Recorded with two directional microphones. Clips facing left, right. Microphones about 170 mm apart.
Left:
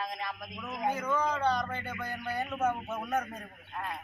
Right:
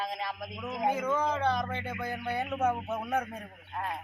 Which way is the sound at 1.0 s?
25° right (ahead or behind).